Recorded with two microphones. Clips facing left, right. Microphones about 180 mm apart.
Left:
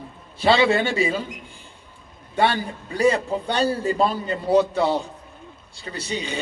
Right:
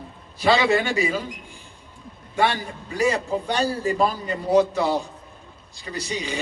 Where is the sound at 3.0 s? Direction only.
30° left (ahead or behind).